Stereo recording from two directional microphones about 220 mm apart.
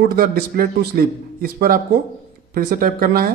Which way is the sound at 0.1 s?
40° right (ahead or behind).